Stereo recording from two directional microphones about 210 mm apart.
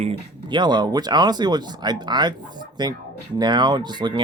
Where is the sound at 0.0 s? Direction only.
25° right (ahead or behind).